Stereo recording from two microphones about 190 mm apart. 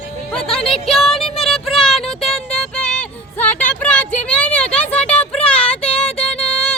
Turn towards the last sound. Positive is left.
turn(degrees=5)  # may be behind; listen again after turning